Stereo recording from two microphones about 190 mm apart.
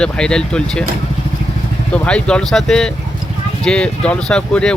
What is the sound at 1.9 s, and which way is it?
Speech, 5° left (ahead or behind).